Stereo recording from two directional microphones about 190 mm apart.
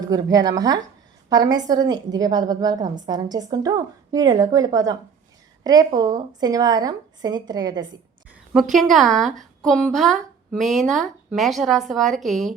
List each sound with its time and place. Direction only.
0.1 s a woman's voice: 20° right (ahead or behind)
8.7 s a woman's voice: centre (ahead or behind)